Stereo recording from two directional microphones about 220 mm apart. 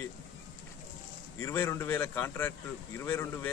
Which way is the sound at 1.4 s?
10° left (ahead or behind).